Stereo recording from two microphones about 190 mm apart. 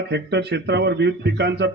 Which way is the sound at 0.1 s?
65° right (ahead or behind).